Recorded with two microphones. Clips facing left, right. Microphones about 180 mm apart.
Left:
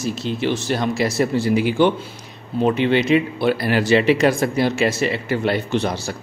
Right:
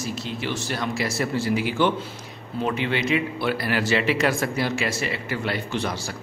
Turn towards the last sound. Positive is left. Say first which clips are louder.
# left 6 dB
turn(degrees=20)  # may be behind; listen again after turning